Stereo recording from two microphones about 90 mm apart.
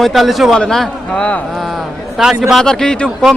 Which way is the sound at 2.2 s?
5° right (ahead or behind).